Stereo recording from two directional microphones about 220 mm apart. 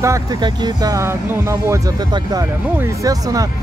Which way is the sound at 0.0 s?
15° right (ahead or behind).